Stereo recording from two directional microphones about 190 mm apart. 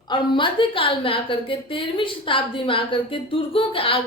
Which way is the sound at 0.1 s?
25° left (ahead or behind).